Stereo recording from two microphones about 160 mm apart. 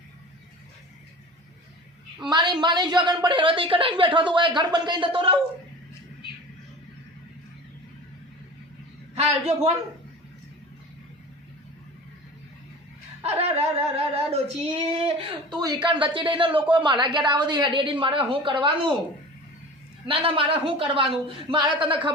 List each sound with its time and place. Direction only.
2.2 s a woman's voice: 30° right (ahead or behind)
9.1 s a woman's voice: 40° right (ahead or behind)
13.2 s a woman's voice: 40° right (ahead or behind)
20.1 s a woman's voice: 35° right (ahead or behind)